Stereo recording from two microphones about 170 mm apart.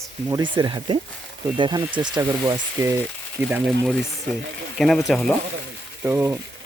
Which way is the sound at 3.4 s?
10° right (ahead or behind).